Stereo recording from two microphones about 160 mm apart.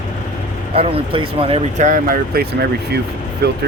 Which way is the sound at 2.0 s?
70° right (ahead or behind).